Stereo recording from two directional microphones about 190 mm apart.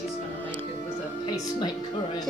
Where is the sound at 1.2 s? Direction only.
20° left (ahead or behind).